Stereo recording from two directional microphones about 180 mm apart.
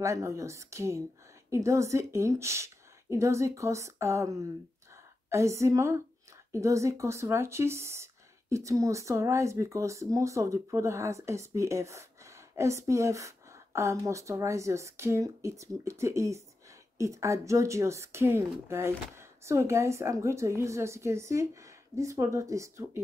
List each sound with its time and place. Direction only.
0.0 s speech: 15° right (ahead or behind)